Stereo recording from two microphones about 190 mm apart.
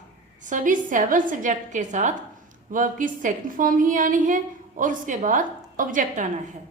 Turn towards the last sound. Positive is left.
turn(degrees=-45)  # may be behind; listen again after turning